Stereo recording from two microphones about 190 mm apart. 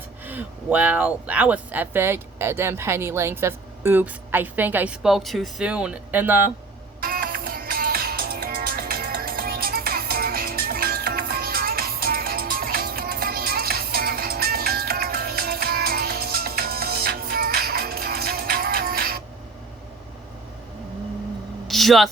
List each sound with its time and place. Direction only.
0.3 s speech: 10° right (ahead or behind)
7.0 s music: 50° right (ahead or behind)
21.7 s a sound: centre (ahead or behind)